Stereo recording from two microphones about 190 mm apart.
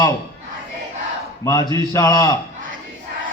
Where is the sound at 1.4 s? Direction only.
20° left (ahead or behind).